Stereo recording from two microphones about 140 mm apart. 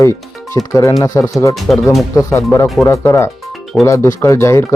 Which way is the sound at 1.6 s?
Centre (ahead or behind).